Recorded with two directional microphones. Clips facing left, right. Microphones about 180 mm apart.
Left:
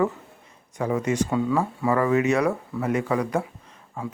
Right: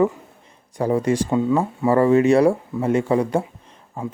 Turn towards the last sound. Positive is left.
turn(degrees=-30)  # may be behind; listen again after turning